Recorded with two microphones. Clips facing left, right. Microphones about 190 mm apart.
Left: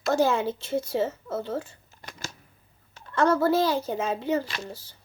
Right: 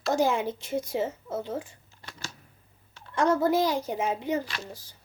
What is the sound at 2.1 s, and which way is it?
Typewriter, 15° left (ahead or behind).